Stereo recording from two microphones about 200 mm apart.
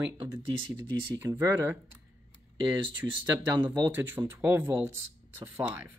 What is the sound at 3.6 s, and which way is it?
Speech, 10° right (ahead or behind).